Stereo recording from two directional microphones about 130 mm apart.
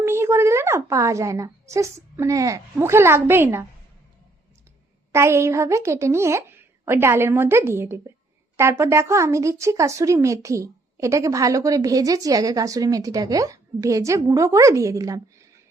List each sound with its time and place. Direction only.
0.0 s a woman's voice: 20° right (ahead or behind)
5.1 s a woman's voice: 20° right (ahead or behind)